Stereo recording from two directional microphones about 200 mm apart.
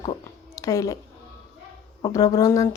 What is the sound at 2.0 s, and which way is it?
Speech, 15° left (ahead or behind).